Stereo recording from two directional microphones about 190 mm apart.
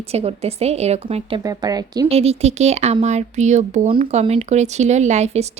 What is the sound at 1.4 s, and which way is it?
Speech, 20° right (ahead or behind).